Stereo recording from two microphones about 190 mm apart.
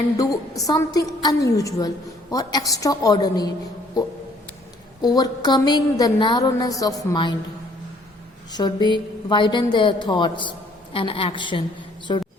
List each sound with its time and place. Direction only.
0.2 s a woman's voice: 20° left (ahead or behind)
5.0 s a woman's voice: 20° left (ahead or behind)
8.5 s a woman's voice: 25° left (ahead or behind)